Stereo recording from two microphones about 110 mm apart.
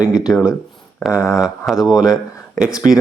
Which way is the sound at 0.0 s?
10° right (ahead or behind).